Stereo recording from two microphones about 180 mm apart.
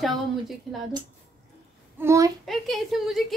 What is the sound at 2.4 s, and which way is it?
Speech, centre (ahead or behind).